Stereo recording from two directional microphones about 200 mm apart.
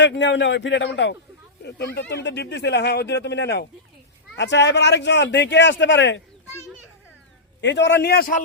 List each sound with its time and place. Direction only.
0.0 s speech: 65° left (ahead or behind)
7.6 s speech: 60° left (ahead or behind)